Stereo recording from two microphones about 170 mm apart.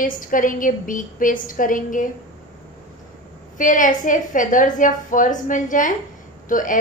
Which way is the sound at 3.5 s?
50° left (ahead or behind).